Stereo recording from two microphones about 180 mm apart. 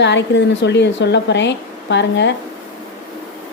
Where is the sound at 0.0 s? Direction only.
75° left (ahead or behind).